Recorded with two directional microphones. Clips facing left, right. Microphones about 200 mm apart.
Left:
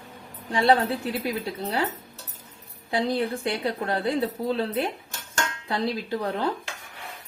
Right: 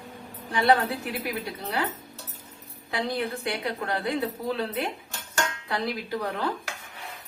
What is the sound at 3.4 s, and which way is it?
Speech, 30° left (ahead or behind).